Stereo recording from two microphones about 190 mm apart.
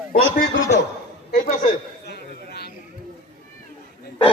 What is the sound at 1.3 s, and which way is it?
Speech, 45° left (ahead or behind).